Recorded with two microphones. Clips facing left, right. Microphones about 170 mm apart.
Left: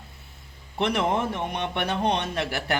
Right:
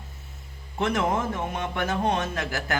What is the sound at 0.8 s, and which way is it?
A man's voice, 20° left (ahead or behind).